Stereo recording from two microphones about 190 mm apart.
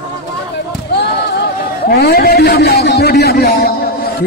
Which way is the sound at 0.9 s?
60° left (ahead or behind).